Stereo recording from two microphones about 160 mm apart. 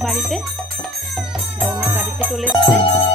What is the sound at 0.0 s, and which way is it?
Music, centre (ahead or behind).